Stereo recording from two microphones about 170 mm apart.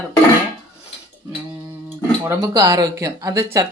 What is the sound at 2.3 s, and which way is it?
Speech, 20° right (ahead or behind).